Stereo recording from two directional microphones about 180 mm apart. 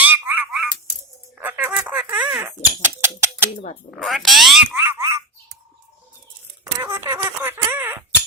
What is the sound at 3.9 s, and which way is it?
Speech, centre (ahead or behind).